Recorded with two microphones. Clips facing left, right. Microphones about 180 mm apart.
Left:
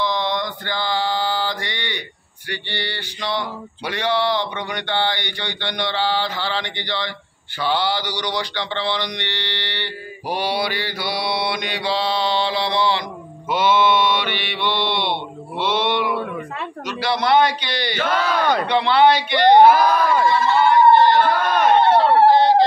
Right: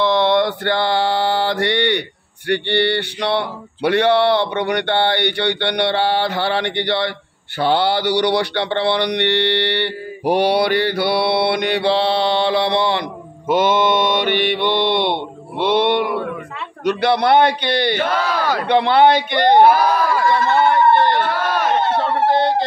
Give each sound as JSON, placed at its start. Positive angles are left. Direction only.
{"t": 0.0, "sound": "mantra", "side_deg": -65}
{"t": 18.4, "sound": "speech", "side_deg": -5}
{"t": 18.7, "sound": "mantra", "side_deg": -55}
{"t": 20.2, "sound": "a sound", "side_deg": -55}